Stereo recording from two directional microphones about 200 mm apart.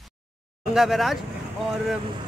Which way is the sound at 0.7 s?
Centre (ahead or behind).